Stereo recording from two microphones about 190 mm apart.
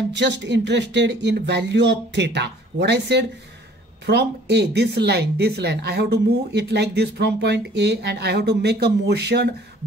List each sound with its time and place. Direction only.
0.1 s speech: 70° right (ahead or behind)